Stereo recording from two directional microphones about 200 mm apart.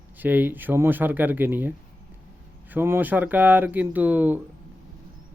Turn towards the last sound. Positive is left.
turn(degrees=-10)  # may be behind; listen again after turning